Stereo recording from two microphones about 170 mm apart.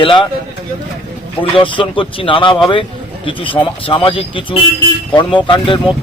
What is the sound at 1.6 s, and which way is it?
Speech, 30° left (ahead or behind).